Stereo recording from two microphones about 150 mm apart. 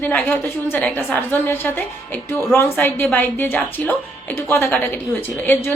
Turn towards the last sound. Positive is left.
turn(degrees=15)  # may be behind; listen again after turning